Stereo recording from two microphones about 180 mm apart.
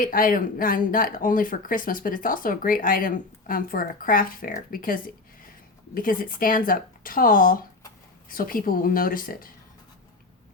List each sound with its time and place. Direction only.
0.0 s speech: 50° left (ahead or behind)